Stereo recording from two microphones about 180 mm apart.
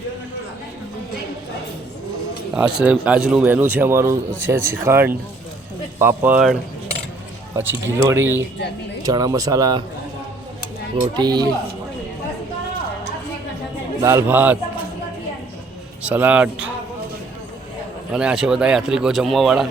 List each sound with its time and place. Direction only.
2.6 s a man's voice: 5° right (ahead or behind)
11.2 s speech: 25° right (ahead or behind)
14.0 s a man's voice: 15° right (ahead or behind)
16.0 s a man's voice: 10° right (ahead or behind)
18.1 s a man's voice: 5° right (ahead or behind)